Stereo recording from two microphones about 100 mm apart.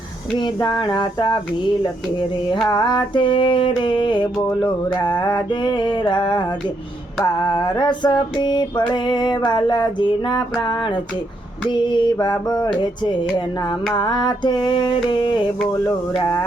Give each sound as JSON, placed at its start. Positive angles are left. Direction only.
{"t": 0.3, "sound": "music", "side_deg": 50}
{"t": 2.6, "sound": "music", "side_deg": 45}